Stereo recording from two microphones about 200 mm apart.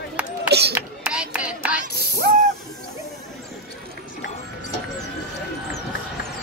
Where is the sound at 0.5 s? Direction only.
55° right (ahead or behind).